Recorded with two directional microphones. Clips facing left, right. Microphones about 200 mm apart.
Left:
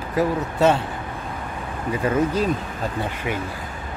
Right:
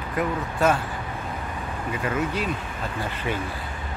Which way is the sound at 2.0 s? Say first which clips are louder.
Left 6 dB; 35° left (ahead or behind).